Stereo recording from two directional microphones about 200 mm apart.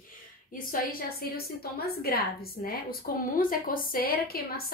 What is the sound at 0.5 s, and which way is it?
Speech, 45° left (ahead or behind).